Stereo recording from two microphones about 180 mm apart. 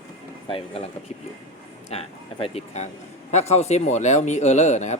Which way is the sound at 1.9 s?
35° left (ahead or behind).